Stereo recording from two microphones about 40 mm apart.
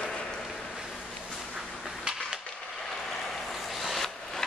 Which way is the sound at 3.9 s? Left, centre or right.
Centre.